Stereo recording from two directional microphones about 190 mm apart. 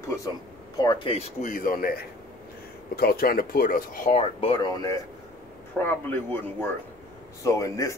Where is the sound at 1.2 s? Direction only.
45° left (ahead or behind).